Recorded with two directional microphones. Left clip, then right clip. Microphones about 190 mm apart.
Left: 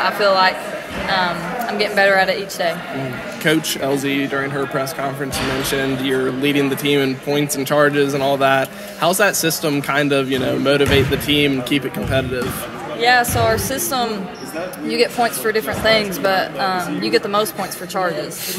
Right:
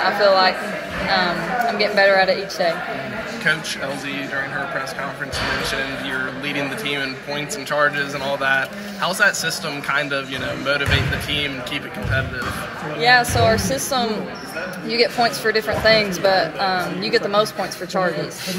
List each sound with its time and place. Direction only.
0.0 s a woman's voice: centre (ahead or behind)
3.4 s speech: 45° left (ahead or behind)
5.7 s speech: 50° left (ahead or behind)
13.0 s a woman's voice: 5° right (ahead or behind)